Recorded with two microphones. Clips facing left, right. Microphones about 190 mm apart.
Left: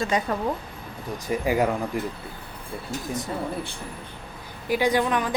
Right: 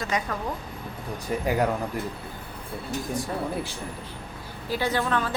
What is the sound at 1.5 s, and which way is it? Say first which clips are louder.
Speech: left 2 dB; 10° left (ahead or behind).